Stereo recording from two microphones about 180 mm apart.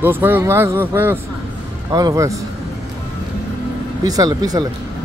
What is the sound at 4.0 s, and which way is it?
Speech, 20° right (ahead or behind).